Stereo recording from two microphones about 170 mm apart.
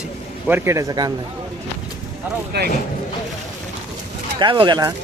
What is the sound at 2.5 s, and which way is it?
Speech, 75° right (ahead or behind).